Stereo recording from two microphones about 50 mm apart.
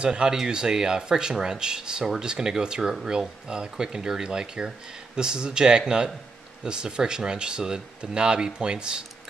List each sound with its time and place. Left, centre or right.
0.0 s speech: centre